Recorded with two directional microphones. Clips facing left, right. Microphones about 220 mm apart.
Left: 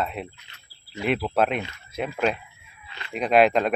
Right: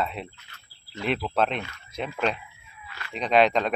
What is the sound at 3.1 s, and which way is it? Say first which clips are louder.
Speech: left 2 dB; 5° left (ahead or behind).